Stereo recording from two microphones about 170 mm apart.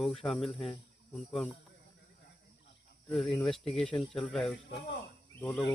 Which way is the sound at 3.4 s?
5° left (ahead or behind).